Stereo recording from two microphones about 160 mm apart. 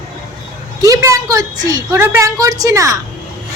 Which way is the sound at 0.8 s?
20° right (ahead or behind).